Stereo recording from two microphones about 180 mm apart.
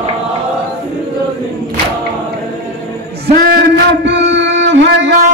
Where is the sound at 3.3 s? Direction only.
60° right (ahead or behind); by 5.1 s 80° right.